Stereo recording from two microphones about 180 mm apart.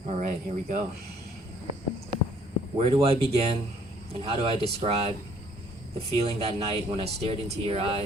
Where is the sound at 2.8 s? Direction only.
35° right (ahead or behind).